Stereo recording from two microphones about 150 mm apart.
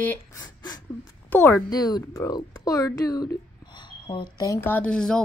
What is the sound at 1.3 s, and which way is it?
Speech, 10° left (ahead or behind).